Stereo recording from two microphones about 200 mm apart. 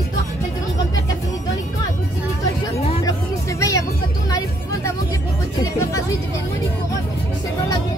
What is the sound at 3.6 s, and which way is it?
Music, 15° left (ahead or behind).